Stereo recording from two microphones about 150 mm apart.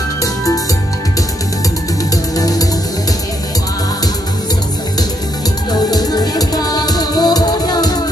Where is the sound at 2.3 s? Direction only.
25° left (ahead or behind).